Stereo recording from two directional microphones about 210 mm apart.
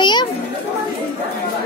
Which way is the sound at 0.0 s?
20° left (ahead or behind).